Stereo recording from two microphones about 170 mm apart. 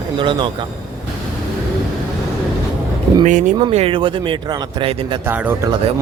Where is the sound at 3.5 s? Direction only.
30° right (ahead or behind).